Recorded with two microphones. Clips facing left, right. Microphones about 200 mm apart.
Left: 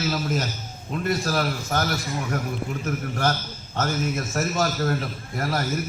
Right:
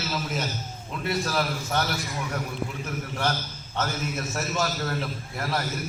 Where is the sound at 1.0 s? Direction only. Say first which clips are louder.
Left 2 dB; 45° left (ahead or behind).